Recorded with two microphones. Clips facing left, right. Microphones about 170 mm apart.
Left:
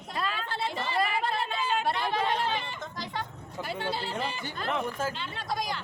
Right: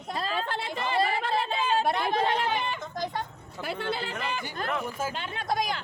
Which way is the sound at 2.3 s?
70° right (ahead or behind).